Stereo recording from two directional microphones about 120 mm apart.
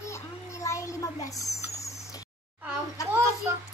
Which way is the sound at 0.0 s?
25° left (ahead or behind).